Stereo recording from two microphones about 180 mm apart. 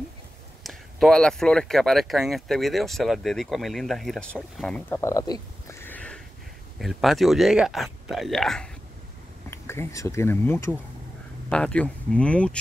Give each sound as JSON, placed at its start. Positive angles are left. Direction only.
{"t": 0.7, "sound": "speech", "side_deg": 0}
{"t": 9.5, "sound": "speech", "side_deg": 15}